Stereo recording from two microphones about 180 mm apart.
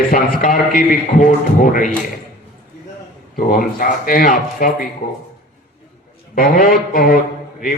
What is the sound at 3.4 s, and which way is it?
A man's voice, 50° left (ahead or behind).